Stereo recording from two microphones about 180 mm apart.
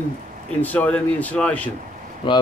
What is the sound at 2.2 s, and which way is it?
Speech, 25° left (ahead or behind).